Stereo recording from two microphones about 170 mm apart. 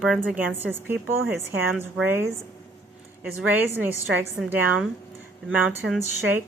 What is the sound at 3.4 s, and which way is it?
Speech, 10° right (ahead or behind).